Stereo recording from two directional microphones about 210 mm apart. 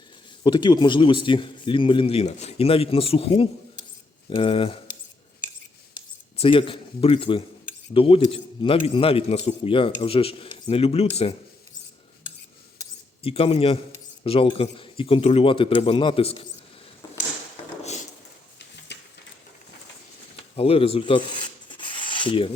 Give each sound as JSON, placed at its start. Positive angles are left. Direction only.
{"t": 0.4, "sound": "a man's voice", "side_deg": 20}
{"t": 6.3, "sound": "a man's voice", "side_deg": 25}
{"t": 12.8, "sound": "a sound", "side_deg": 25}
{"t": 14.3, "sound": "a man's voice", "side_deg": 25}
{"t": 18.9, "sound": "a sound", "side_deg": 55}
{"t": 20.6, "sound": "rub", "side_deg": 25}